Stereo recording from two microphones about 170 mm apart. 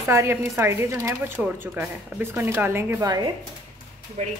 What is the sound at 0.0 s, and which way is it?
Speech, 15° right (ahead or behind).